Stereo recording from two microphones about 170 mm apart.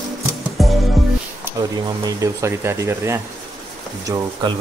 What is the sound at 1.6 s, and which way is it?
Speech, 20° right (ahead or behind).